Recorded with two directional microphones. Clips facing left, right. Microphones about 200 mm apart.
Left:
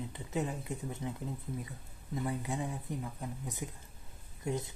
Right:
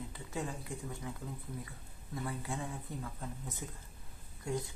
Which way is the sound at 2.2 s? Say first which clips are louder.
Left 4 dB; 20° left (ahead or behind).